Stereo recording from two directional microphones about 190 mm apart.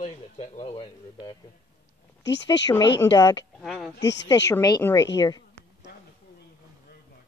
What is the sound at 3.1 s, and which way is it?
Speech, 20° left (ahead or behind).